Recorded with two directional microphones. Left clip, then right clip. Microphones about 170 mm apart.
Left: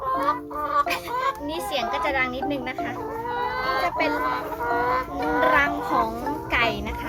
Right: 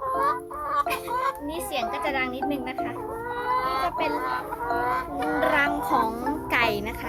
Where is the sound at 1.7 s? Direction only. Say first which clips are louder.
Left 3 dB; 20° right (ahead or behind).